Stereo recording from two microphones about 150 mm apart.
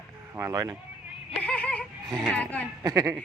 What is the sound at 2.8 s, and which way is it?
Speech, 25° right (ahead or behind).